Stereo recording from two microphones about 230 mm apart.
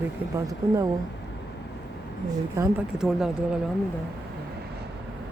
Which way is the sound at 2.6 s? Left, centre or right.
Centre.